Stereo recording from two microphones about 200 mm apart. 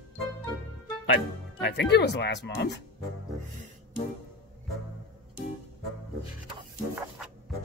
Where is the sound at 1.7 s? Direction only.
60° left (ahead or behind).